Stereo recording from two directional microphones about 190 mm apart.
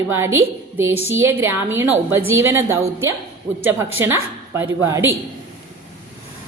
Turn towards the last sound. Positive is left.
turn(degrees=-15)  # may be behind; listen again after turning